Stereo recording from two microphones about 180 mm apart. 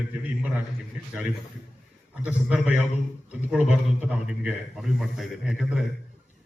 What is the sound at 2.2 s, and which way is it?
A man's voice, 5° right (ahead or behind).